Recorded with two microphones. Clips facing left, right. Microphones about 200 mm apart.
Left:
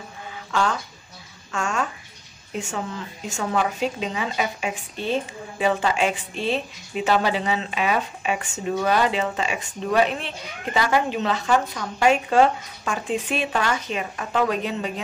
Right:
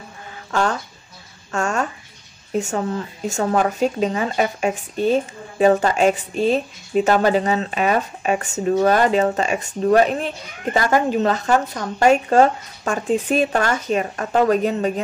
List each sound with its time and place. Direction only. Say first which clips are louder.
0.5 s chicken: right 3 dB; 45° right (ahead or behind)
1.5 s a sound: right 4 dB; 45° right (ahead or behind)
2.5 s speech: right 7 dB; 45° right (ahead or behind)